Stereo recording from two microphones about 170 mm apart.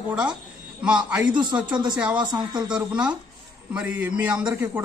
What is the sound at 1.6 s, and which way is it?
Speech, 25° right (ahead or behind).